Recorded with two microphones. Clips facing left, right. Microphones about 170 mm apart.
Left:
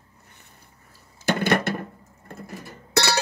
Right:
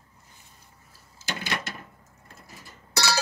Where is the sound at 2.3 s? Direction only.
60° left (ahead or behind).